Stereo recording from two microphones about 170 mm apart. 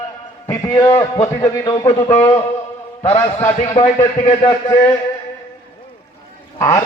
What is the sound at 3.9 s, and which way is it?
Speech, 40° left (ahead or behind).